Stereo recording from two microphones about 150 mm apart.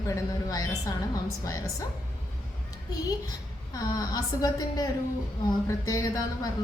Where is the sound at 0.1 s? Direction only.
20° left (ahead or behind).